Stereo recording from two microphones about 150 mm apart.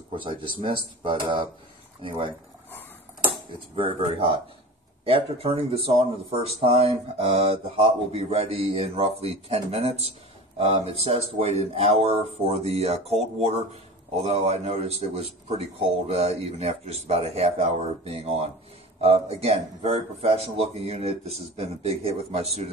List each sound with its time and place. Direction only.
0.1 s speech: 35° right (ahead or behind)
3.7 s a man's voice: 35° right (ahead or behind)